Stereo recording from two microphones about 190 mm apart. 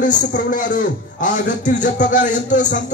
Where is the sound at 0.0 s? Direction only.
40° left (ahead or behind).